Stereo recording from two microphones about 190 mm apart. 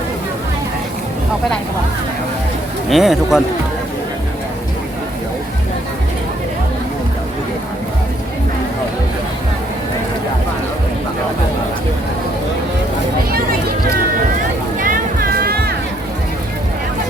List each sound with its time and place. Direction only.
2.9 s speech: centre (ahead or behind)
14.8 s music: 45° right (ahead or behind)